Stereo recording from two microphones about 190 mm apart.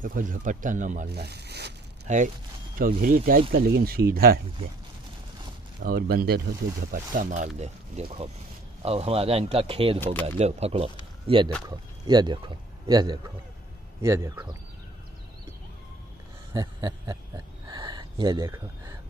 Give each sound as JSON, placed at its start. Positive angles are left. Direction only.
{"t": 0.0, "sound": "speech", "side_deg": -45}
{"t": 1.1, "sound": "speech", "side_deg": -60}
{"t": 2.0, "sound": "speech", "side_deg": -40}
{"t": 5.8, "sound": "speech", "side_deg": -55}
{"t": 16.5, "sound": "speech", "side_deg": -20}
{"t": 17.6, "sound": "gasp", "side_deg": -20}